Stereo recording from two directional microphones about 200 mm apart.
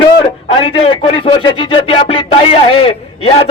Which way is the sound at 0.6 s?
30° left (ahead or behind).